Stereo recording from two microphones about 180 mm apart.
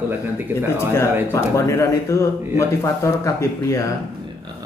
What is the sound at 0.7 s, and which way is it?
Speech, 15° left (ahead or behind).